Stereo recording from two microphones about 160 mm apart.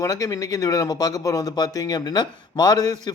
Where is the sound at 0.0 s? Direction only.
20° left (ahead or behind).